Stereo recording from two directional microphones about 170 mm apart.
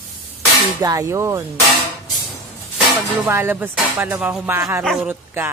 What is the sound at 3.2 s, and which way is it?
Speech, 15° right (ahead or behind).